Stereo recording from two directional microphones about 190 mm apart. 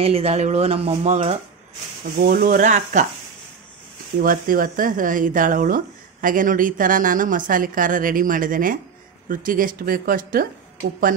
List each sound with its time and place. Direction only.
0.0 s speech: 30° right (ahead or behind)
2.0 s speech: 50° right (ahead or behind)
4.2 s speech: 45° right (ahead or behind)